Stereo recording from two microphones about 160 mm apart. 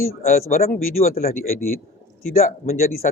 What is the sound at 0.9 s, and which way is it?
Speech, 65° left (ahead or behind).